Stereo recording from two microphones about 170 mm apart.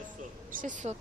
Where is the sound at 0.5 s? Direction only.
50° right (ahead or behind).